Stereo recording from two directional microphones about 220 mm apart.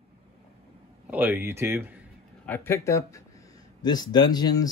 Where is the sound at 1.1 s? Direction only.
10° right (ahead or behind).